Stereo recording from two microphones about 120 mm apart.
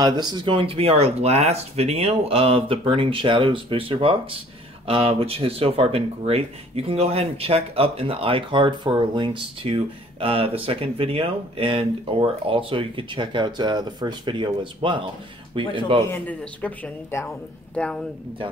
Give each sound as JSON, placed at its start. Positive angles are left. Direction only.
{"t": 0.0, "sound": "speech", "side_deg": -35}
{"t": 0.6, "sound": "speech", "side_deg": -50}
{"t": 16.1, "sound": "speech", "side_deg": 10}